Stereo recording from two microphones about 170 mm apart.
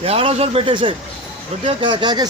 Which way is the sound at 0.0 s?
35° right (ahead or behind).